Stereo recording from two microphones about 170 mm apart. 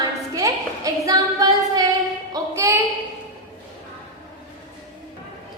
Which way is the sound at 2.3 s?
15° right (ahead or behind).